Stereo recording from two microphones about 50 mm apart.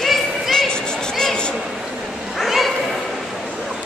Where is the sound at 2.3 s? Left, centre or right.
Centre.